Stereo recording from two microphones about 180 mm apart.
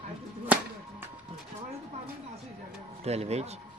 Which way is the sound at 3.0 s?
35° right (ahead or behind).